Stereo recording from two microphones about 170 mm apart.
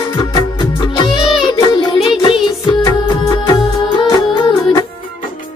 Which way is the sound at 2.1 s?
25° left (ahead or behind).